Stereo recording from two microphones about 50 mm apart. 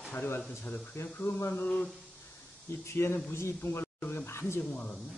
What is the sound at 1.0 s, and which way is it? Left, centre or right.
Speech, left.